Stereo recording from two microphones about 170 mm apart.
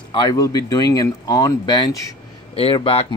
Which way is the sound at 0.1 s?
25° left (ahead or behind).